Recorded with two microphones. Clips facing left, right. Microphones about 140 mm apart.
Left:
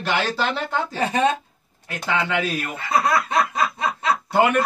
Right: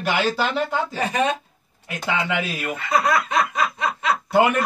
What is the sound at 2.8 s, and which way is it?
Snicker, 30° left (ahead or behind).